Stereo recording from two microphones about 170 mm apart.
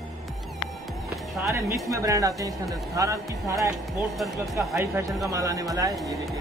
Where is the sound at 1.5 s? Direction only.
20° right (ahead or behind).